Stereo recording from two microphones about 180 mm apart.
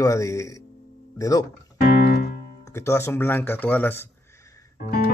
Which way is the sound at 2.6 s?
15° left (ahead or behind).